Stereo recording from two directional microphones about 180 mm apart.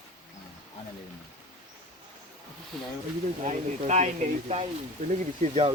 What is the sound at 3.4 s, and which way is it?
Speech, 40° right (ahead or behind).